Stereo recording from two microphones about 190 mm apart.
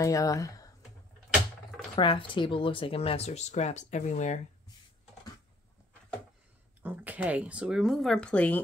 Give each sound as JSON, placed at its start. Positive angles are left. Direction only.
{"t": 0.0, "sound": "speech", "side_deg": 15}
{"t": 2.0, "sound": "speech", "side_deg": 25}
{"t": 6.8, "sound": "speech", "side_deg": -10}